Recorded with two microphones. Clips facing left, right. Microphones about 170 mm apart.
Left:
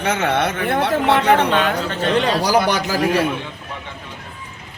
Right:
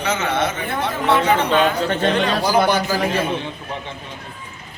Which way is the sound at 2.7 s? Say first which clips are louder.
Right 1 dB; 75° left (ahead or behind).